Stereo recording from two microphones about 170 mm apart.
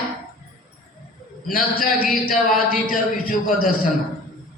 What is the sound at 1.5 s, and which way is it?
A man's voice, 60° left (ahead or behind).